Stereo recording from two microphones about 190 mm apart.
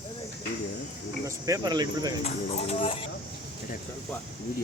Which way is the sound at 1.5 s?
20° right (ahead or behind).